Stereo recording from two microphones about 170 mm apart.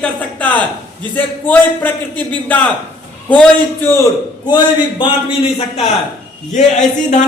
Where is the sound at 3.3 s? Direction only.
10° left (ahead or behind).